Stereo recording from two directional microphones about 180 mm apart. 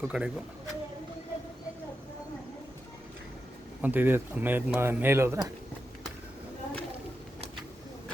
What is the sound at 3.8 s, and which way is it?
Speech, 10° right (ahead or behind).